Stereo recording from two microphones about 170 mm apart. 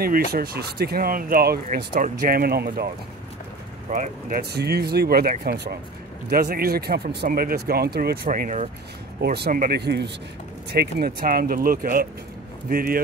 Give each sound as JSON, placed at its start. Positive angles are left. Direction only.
{"t": 0.3, "sound": "speech", "side_deg": -65}
{"t": 3.9, "sound": "speech", "side_deg": -55}
{"t": 9.2, "sound": "speech", "side_deg": -70}
{"t": 10.7, "sound": "speech", "side_deg": -70}